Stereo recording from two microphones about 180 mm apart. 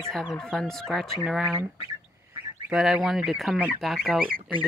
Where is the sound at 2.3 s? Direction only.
15° right (ahead or behind).